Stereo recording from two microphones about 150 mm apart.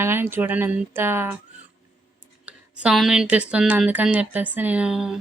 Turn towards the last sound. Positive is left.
turn(degrees=-5)  # may be behind; listen again after turning